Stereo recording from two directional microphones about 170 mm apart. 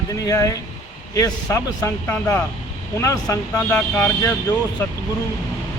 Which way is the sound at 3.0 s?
20° left (ahead or behind).